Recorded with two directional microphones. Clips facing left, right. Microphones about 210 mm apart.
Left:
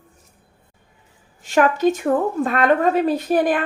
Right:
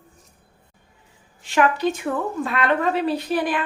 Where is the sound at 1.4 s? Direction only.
45° left (ahead or behind).